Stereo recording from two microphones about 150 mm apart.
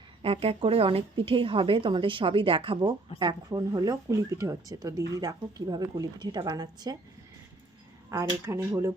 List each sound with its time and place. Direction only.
0.2 s a woman's voice: 40° right (ahead or behind)
8.1 s speech: 20° right (ahead or behind)